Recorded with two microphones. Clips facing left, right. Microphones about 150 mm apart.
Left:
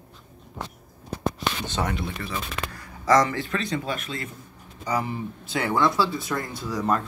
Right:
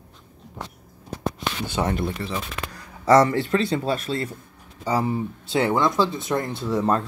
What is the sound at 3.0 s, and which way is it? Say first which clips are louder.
Speech: right 4 dB; 30° right (ahead or behind).